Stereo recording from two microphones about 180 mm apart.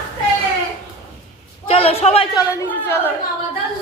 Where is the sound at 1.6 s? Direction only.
30° left (ahead or behind).